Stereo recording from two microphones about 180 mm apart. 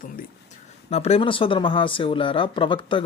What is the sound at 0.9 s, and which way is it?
Speech, 35° left (ahead or behind).